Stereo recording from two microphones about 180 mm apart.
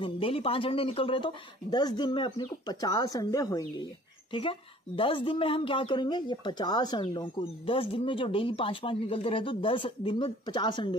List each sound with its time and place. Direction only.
0.0 s speech: 30° left (ahead or behind)